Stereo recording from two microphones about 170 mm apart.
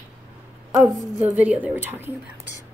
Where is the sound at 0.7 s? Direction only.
15° right (ahead or behind).